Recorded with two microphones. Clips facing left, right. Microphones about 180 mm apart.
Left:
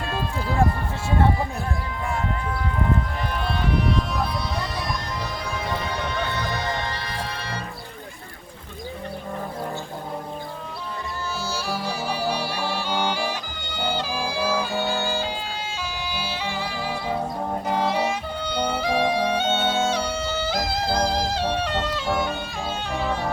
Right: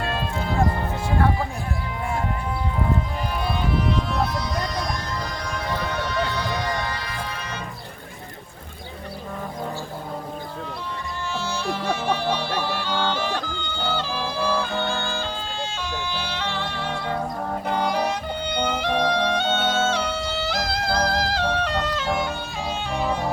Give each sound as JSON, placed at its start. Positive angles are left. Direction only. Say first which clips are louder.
{"t": 6.6, "sound": "music", "louder": "right 1 dB", "side_deg": 25}
{"t": 11.5, "sound": "music", "louder": "right 4 dB", "side_deg": 5}